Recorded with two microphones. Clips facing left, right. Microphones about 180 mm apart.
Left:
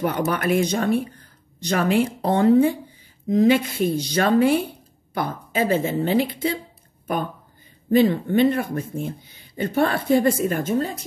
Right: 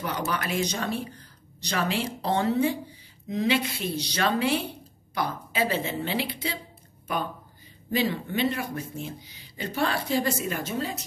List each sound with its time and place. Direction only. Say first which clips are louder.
0.0 s speech: left 7 dB; 50° left (ahead or behind)
7.9 s speech: left 10 dB; 50° left (ahead or behind)